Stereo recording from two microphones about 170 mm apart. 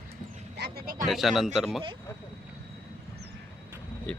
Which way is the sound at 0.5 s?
75° right (ahead or behind).